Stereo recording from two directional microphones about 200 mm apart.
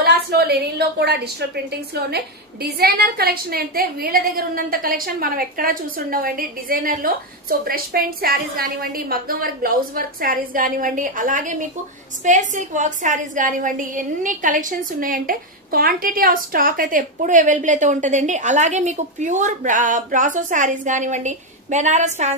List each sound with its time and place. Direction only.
0.0 s a woman's voice: 50° right (ahead or behind); by 22.3 s 35° right (ahead or behind)